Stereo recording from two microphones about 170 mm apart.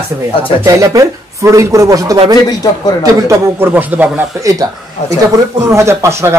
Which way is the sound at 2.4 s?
20° left (ahead or behind).